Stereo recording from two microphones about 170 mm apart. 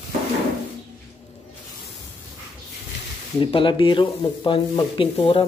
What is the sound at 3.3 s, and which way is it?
Speech, 30° left (ahead or behind).